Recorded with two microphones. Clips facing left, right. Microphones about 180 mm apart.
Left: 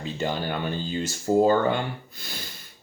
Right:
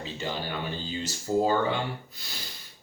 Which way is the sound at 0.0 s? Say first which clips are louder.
Left 5 dB; 50° left (ahead or behind).